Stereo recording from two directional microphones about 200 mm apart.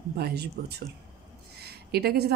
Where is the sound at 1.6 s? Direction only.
55° right (ahead or behind).